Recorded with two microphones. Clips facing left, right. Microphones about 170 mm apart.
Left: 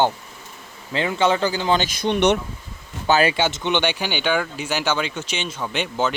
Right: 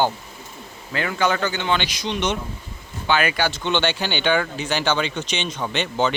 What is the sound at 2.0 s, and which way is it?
Speech, 60° left (ahead or behind).